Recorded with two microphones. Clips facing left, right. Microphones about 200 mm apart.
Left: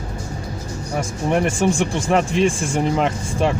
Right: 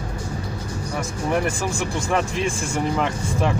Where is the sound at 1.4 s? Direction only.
25° left (ahead or behind).